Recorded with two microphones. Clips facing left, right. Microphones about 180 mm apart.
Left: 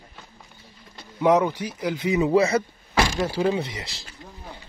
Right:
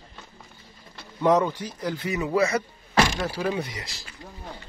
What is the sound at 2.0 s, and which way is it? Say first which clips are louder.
Speech: left 5 dB; 20° left (ahead or behind).